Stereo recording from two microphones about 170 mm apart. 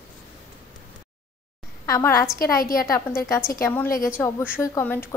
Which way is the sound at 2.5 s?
55° left (ahead or behind).